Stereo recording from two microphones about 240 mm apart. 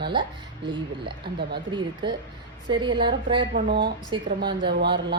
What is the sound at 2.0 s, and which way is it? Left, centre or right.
Speech, right.